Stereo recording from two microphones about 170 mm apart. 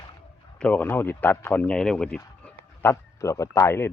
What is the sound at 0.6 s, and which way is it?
Speech, 10° left (ahead or behind).